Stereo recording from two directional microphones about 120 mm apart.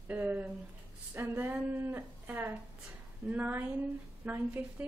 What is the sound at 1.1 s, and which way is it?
Speech, 20° right (ahead or behind).